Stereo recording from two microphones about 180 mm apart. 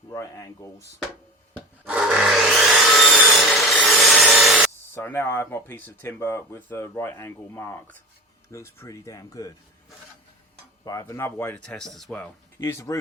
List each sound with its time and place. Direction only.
0.1 s speech: 20° left (ahead or behind)
1.8 s sawing: 5° right (ahead or behind)
3.0 s wood: centre (ahead or behind)
4.9 s speech: 15° left (ahead or behind)
10.8 s speech: 15° left (ahead or behind)
12.5 s speech: 15° left (ahead or behind)